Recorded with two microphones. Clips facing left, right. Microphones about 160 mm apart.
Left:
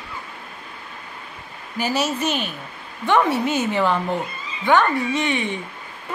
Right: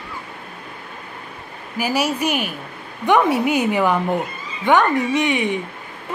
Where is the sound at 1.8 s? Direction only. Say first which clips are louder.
Right 2 dB; 10° right (ahead or behind).